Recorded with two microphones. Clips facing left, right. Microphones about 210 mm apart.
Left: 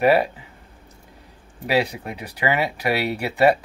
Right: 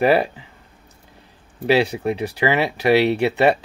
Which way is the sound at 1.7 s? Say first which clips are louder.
Right 5 dB; 30° right (ahead or behind).